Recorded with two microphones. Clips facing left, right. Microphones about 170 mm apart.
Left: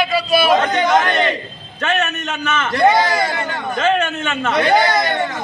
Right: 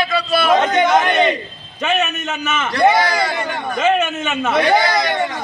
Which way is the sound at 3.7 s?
10° right (ahead or behind).